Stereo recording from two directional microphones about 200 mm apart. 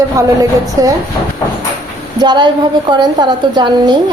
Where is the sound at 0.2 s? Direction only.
15° right (ahead or behind).